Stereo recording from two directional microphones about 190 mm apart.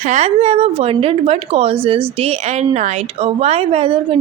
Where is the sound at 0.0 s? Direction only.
35° right (ahead or behind).